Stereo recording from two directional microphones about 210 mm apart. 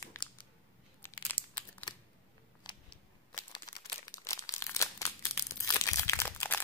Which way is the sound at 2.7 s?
20° left (ahead or behind).